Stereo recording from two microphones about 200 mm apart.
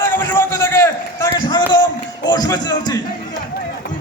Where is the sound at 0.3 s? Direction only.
15° left (ahead or behind).